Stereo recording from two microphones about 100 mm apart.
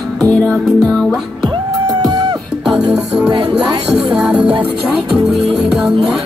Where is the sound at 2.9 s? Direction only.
5° right (ahead or behind).